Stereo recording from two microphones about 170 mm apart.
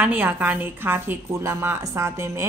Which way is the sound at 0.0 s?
10° right (ahead or behind).